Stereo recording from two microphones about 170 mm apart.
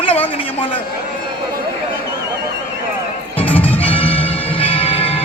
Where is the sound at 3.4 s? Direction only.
10° left (ahead or behind).